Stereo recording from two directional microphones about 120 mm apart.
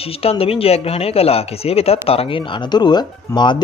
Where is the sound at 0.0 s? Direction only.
55° left (ahead or behind).